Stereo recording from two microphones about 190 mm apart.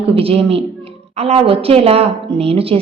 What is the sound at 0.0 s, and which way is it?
A woman's voice, 30° right (ahead or behind).